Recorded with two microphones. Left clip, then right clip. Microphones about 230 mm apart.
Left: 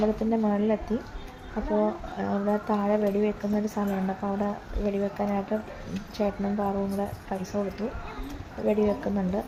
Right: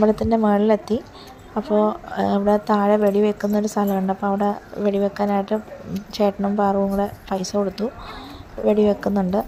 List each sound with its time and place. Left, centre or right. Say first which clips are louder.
0.0 s speech: right 8 dB; right
8.6 s speech: right 7 dB; right